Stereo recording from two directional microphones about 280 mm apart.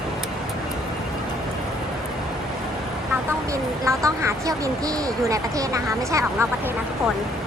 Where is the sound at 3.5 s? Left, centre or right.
Centre.